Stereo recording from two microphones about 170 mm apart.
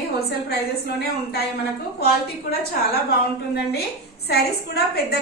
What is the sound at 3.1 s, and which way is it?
A woman's voice, 70° left (ahead or behind).